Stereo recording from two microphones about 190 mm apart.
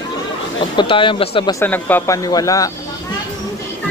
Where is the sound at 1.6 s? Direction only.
10° left (ahead or behind).